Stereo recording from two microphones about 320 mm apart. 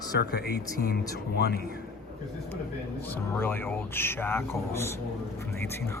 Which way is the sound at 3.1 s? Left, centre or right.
Centre.